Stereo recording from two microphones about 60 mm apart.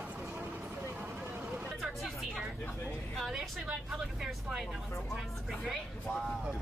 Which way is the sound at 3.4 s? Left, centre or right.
Centre.